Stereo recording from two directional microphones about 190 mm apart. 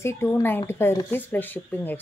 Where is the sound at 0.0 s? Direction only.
10° left (ahead or behind).